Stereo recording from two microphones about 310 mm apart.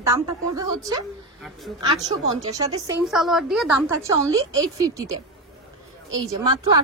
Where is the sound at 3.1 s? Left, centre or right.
Centre.